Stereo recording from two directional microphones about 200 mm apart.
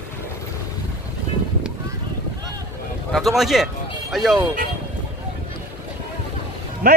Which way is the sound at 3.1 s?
Centre (ahead or behind).